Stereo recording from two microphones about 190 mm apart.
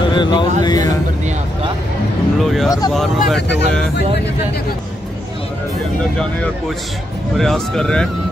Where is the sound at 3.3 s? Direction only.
65° left (ahead or behind).